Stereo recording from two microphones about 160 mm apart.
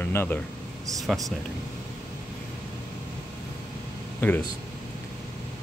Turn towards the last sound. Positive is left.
turn(degrees=10)  # may be behind; listen again after turning